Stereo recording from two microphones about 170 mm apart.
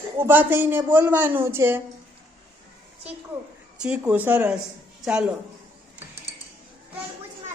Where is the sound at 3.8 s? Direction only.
5° right (ahead or behind).